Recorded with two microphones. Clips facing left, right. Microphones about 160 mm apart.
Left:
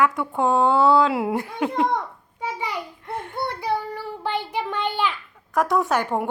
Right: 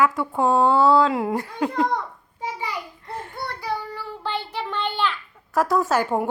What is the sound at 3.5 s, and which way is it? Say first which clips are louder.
Child singing: left 3 dB; 20° left (ahead or behind).